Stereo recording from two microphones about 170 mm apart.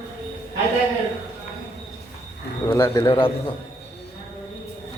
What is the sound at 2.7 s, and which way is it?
Speech, 15° left (ahead or behind).